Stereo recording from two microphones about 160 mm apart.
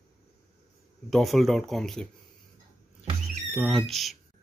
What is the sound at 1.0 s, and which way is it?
Speech, centre (ahead or behind).